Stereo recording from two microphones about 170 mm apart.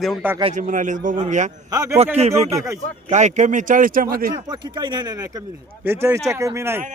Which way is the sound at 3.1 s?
45° right (ahead or behind).